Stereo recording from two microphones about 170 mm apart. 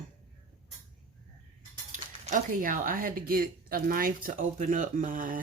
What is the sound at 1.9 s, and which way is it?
Speech, 50° right (ahead or behind).